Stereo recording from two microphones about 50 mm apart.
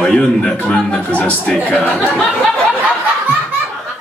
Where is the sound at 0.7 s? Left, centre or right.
Left.